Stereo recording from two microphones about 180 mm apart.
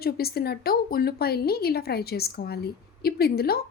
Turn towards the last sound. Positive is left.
turn(degrees=60)  # may be behind; listen again after turning